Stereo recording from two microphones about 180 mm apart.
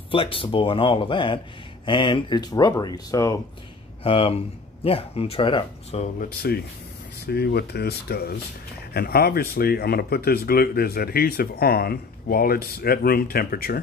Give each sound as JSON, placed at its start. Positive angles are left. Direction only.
{"t": 0.1, "sound": "speech", "side_deg": 30}
{"t": 4.0, "sound": "speech", "side_deg": 30}
{"t": 6.2, "sound": "speech", "side_deg": 60}